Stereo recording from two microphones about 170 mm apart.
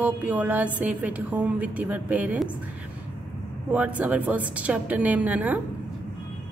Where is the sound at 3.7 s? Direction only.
10° right (ahead or behind).